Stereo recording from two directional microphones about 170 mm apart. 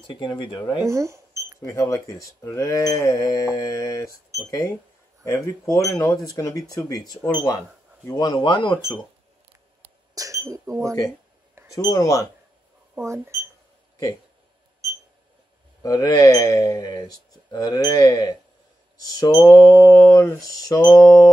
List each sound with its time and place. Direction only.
0.0 s speech: 30° left (ahead or behind)
0.8 s cash register: 15° right (ahead or behind)
1.6 s mantra: 15° left (ahead or behind)
5.2 s speech: 15° left (ahead or behind)
10.1 s speech: 20° right (ahead or behind)
11.7 s speech: 20° left (ahead or behind)
12.9 s speech: 15° right (ahead or behind)
15.8 s speech: 20° left (ahead or behind)
19.9 s mantra: centre (ahead or behind)
20.2 s speech: 20° left (ahead or behind)